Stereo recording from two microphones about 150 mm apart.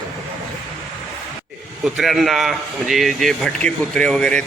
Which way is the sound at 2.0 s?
Centre (ahead or behind).